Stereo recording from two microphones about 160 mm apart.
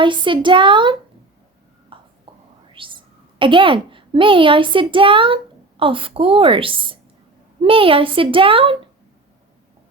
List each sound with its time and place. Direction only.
0.0 s a woman's voice: 30° right (ahead or behind)
1.9 s whispering: 35° right (ahead or behind)
3.3 s a woman's voice: 30° right (ahead or behind)